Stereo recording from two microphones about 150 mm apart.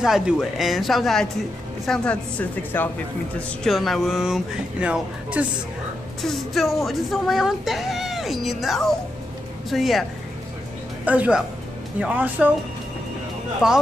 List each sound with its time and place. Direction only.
0.0 s a woman's voice: 5° right (ahead or behind)
3.3 s speech: centre (ahead or behind)
11.1 s speech: 10° right (ahead or behind)
13.6 s speech: 5° right (ahead or behind)